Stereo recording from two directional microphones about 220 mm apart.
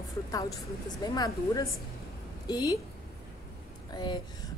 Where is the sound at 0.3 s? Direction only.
15° left (ahead or behind).